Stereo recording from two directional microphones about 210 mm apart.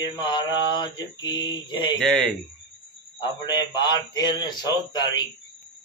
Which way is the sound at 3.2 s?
20° left (ahead or behind).